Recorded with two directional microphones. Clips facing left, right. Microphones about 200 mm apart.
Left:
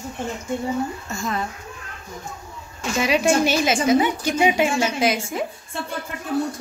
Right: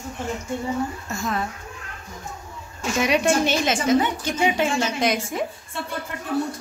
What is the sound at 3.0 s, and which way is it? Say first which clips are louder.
A woman's voice: left 1 dB; centre (ahead or behind).